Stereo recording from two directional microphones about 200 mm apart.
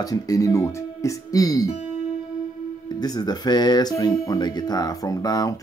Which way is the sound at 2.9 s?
20° left (ahead or behind).